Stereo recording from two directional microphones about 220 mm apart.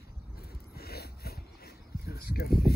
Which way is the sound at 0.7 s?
45° left (ahead or behind).